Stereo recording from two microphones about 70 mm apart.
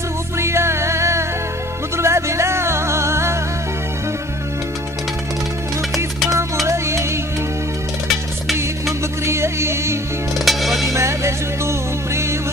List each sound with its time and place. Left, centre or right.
0.4 s music: right
6.6 s music: right
9.2 s music: right
10.4 s music: centre
10.9 s music: right